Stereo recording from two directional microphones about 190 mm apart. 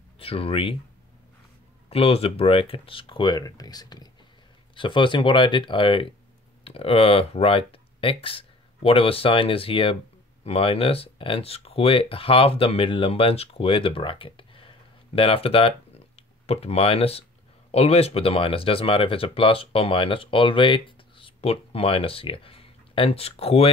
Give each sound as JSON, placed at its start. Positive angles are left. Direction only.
{"t": 0.2, "sound": "speech", "side_deg": 30}
{"t": 1.9, "sound": "speech", "side_deg": 30}